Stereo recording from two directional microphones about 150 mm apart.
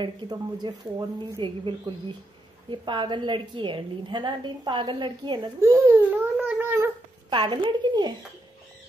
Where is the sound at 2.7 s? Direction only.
30° right (ahead or behind).